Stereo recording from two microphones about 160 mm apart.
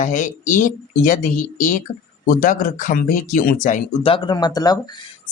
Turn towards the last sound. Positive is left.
turn(degrees=25)  # may be behind; listen again after turning